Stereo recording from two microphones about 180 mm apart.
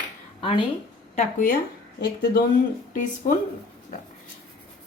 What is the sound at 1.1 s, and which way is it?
Speech, 45° left (ahead or behind).